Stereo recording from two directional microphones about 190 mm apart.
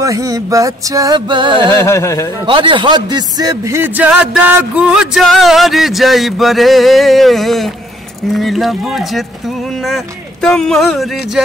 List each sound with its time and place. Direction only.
0.0 s music: 20° right (ahead or behind)
1.8 s speech: 15° left (ahead or behind)
2.4 s a man's voice: 25° right (ahead or behind); by 11.4 s centre (ahead or behind)